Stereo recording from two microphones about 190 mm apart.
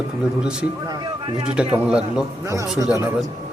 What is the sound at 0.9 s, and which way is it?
Speech, 25° right (ahead or behind).